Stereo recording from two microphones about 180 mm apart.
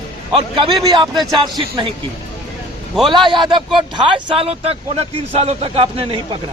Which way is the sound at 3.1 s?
25° right (ahead or behind).